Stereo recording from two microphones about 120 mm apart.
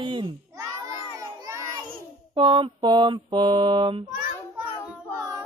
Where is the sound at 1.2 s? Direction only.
25° right (ahead or behind).